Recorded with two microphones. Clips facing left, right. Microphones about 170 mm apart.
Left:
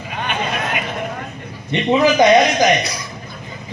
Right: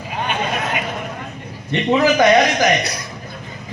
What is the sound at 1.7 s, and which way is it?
Speech, 15° left (ahead or behind).